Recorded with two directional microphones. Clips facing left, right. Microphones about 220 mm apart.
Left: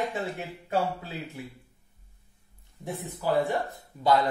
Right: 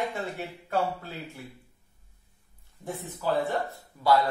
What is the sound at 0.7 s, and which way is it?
Speech, 15° left (ahead or behind).